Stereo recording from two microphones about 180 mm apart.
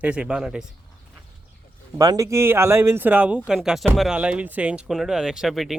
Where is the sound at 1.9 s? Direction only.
20° right (ahead or behind).